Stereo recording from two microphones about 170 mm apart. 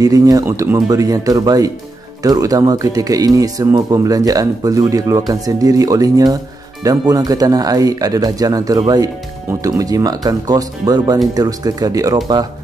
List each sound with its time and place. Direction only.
0.0 s speech: 20° right (ahead or behind)